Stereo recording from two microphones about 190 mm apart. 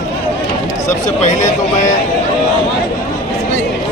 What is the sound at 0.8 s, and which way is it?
Speech, 40° left (ahead or behind).